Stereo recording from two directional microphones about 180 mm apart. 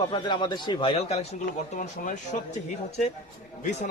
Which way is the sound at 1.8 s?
45° left (ahead or behind).